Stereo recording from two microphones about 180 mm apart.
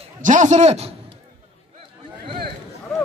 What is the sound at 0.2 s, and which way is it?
Speech, 45° right (ahead or behind).